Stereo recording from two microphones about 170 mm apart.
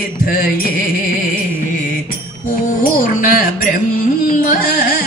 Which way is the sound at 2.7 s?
55° left (ahead or behind).